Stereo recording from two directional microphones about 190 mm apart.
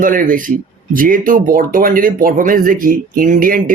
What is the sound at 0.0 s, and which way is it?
Speech, 45° right (ahead or behind).